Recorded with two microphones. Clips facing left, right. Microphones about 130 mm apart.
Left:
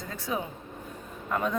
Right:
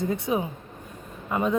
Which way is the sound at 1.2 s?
10° right (ahead or behind).